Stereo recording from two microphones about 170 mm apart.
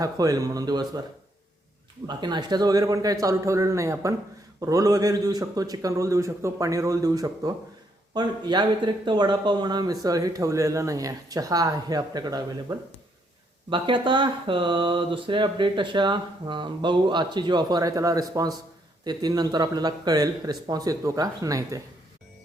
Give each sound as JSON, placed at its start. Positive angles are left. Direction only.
{"t": 0.0, "sound": "speech", "side_deg": -20}
{"t": 2.0, "sound": "speech", "side_deg": -25}